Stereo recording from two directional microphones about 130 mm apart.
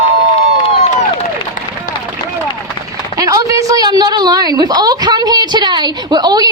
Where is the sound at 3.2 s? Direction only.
25° right (ahead or behind).